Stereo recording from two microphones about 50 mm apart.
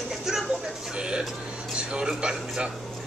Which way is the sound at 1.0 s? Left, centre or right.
Centre.